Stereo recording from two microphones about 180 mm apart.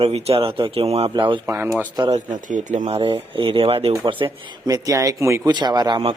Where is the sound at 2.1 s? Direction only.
45° right (ahead or behind).